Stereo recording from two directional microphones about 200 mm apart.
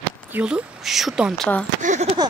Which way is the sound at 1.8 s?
40° right (ahead or behind).